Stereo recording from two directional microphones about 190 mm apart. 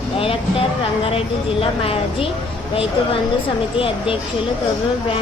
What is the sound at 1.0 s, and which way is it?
A woman's voice, 30° left (ahead or behind).